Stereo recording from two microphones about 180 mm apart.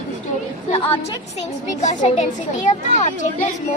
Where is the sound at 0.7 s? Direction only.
30° left (ahead or behind).